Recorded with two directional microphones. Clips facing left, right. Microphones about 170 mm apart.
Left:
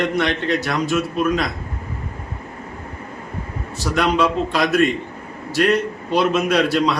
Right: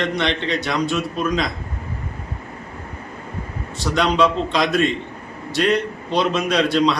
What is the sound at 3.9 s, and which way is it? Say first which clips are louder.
A man's voice: even; 5° left (ahead or behind).